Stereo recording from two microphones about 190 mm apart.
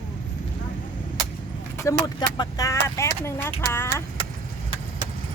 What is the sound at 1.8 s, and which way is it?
Speech, 20° left (ahead or behind).